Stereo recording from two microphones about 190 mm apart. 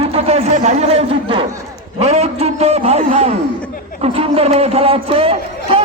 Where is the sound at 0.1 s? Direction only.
35° right (ahead or behind).